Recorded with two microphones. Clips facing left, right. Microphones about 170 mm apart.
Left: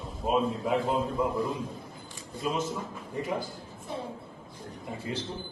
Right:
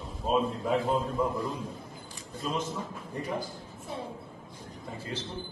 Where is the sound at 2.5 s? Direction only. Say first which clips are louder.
Left 2 dB; 10° left (ahead or behind).